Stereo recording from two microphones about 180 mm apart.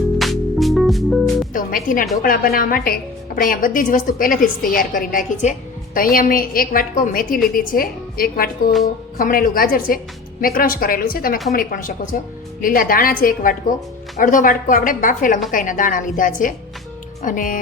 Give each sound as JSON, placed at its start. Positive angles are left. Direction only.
{"t": 0.2, "sound": "music", "side_deg": 0}
{"t": 1.5, "sound": "a woman's voice", "side_deg": 50}